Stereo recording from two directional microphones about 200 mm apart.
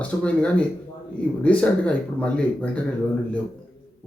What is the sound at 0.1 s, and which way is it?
Speech, 5° left (ahead or behind).